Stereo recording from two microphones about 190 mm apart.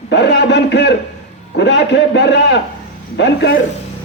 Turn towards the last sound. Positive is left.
turn(degrees=65)  # may be behind; listen again after turning